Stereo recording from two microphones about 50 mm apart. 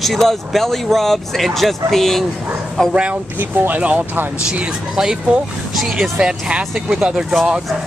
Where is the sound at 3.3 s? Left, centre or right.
Right.